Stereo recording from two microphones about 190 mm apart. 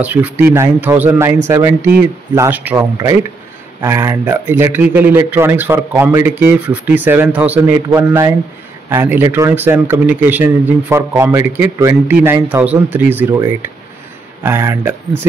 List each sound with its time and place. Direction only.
0.0 s speech: 10° right (ahead or behind)
8.9 s speech: 10° right (ahead or behind)
14.4 s speech: 15° right (ahead or behind)